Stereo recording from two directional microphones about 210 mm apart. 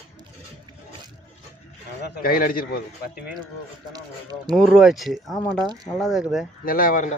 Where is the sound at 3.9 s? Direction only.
20° right (ahead or behind).